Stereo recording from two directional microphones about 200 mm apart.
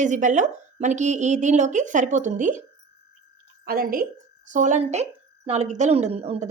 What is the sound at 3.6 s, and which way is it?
A woman's voice, 45° right (ahead or behind).